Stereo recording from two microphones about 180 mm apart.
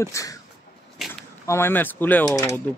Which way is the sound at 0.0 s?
15° left (ahead or behind).